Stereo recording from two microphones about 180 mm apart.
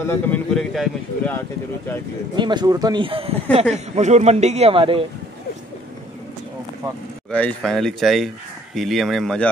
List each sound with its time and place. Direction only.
0.0 s speech: 10° left (ahead or behind)
2.3 s a man's voice: 25° right (ahead or behind)
7.2 s speech: 5° left (ahead or behind)